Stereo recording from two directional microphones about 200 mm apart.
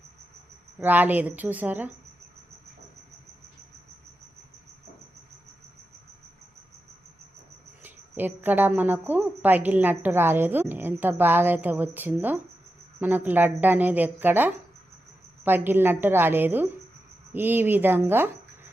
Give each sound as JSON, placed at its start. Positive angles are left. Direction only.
{"t": 0.8, "sound": "a woman's voice", "side_deg": -10}
{"t": 7.8, "sound": "a woman's voice", "side_deg": -10}